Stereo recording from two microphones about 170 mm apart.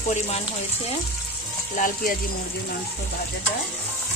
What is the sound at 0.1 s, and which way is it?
Speech, 40° left (ahead or behind).